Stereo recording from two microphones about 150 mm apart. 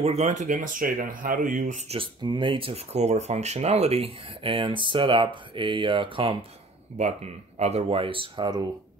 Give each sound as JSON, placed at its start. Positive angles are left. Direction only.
{"t": 0.0, "sound": "speech", "side_deg": -45}
{"t": 2.0, "sound": "speech", "side_deg": -30}
{"t": 7.0, "sound": "speech", "side_deg": -50}